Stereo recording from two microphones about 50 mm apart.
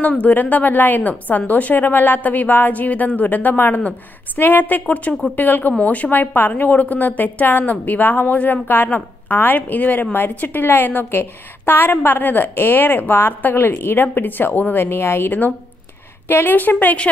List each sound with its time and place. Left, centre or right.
0.0 s a woman's voice: left